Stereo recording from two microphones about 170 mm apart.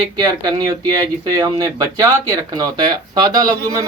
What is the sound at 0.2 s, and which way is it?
Speech, 20° right (ahead or behind).